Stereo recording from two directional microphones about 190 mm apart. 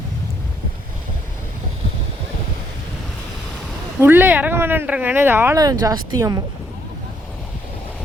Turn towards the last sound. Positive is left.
turn(degrees=-20)  # may be behind; listen again after turning